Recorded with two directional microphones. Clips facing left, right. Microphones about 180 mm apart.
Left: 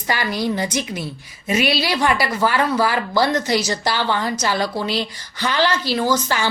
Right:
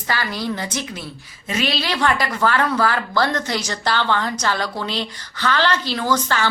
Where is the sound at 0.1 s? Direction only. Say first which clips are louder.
Left 3 dB; 15° left (ahead or behind).